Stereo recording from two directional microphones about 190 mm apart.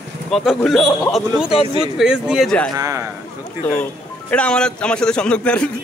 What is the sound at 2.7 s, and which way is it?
Speech, 15° right (ahead or behind).